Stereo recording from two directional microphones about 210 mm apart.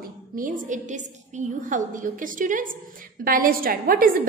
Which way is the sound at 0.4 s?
40° right (ahead or behind).